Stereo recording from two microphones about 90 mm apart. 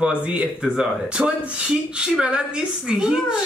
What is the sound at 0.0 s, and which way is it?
Speech, 10° right (ahead or behind).